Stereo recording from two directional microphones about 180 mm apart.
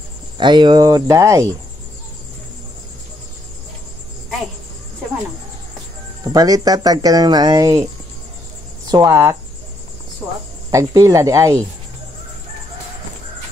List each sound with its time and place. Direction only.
0.4 s speech: 25° right (ahead or behind)
6.2 s speech: 20° right (ahead or behind)
8.9 s speech: 20° right (ahead or behind)
10.7 s speech: 20° right (ahead or behind)